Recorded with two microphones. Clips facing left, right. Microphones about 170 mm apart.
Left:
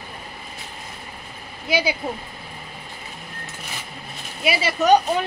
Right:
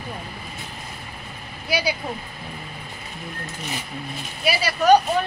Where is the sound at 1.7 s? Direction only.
25° left (ahead or behind).